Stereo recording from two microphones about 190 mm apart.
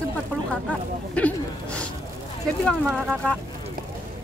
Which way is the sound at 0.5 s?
5° left (ahead or behind).